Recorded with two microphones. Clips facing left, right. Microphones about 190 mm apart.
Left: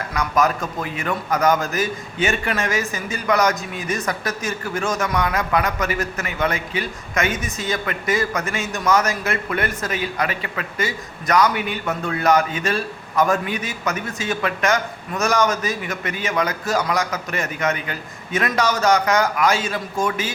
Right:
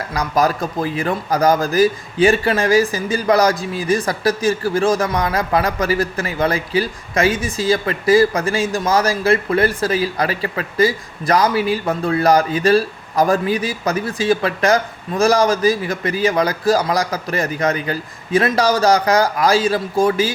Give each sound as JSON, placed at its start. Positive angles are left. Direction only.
{"t": 0.1, "sound": "a man's voice", "side_deg": -35}